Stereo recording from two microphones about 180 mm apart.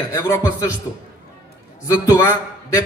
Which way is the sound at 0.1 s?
20° left (ahead or behind).